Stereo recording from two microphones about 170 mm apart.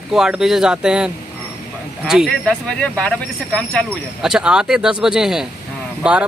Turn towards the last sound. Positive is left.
turn(degrees=-5)  # may be behind; listen again after turning